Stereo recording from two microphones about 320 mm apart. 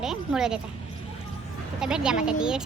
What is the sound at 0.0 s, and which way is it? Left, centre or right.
Speech, centre.